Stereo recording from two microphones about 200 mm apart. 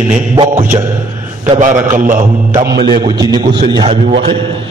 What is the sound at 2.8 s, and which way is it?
A man's voice, 20° right (ahead or behind).